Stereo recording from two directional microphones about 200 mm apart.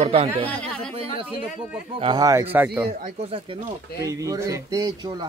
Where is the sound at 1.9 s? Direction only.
25° right (ahead or behind).